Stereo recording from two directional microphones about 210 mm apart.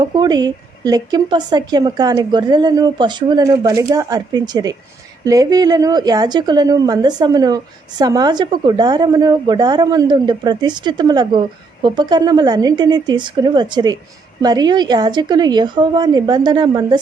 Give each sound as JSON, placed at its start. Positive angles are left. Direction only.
{"t": 0.0, "sound": "a woman's voice", "side_deg": -20}